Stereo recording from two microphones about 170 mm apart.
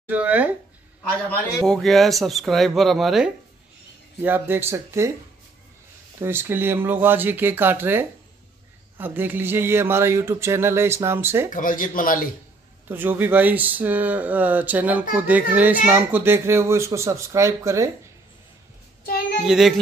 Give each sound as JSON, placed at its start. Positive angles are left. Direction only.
{"t": 0.1, "sound": "speech", "side_deg": -10}
{"t": 1.6, "sound": "speech", "side_deg": 0}
{"t": 4.2, "sound": "speech", "side_deg": -10}
{"t": 6.2, "sound": "speech", "side_deg": -15}
{"t": 11.5, "sound": "a man's voice", "side_deg": 50}
{"t": 12.8, "sound": "speech", "side_deg": -10}
{"t": 19.4, "sound": "speech", "side_deg": 0}